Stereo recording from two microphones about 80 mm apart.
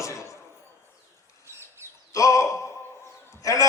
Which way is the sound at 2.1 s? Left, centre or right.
Left.